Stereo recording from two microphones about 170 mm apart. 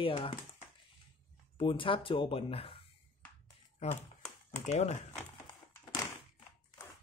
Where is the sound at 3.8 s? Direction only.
40° left (ahead or behind).